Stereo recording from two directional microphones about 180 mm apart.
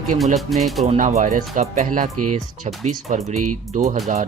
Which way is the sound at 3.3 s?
45° right (ahead or behind).